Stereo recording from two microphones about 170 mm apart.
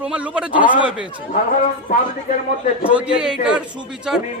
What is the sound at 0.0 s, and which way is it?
A man's voice, 5° right (ahead or behind).